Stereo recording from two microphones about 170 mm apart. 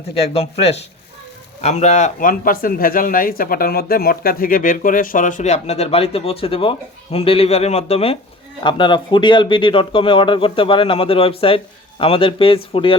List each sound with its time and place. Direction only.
0.1 s speech: 35° left (ahead or behind)